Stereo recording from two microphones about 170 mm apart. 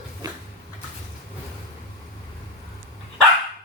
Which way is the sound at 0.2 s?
20° right (ahead or behind).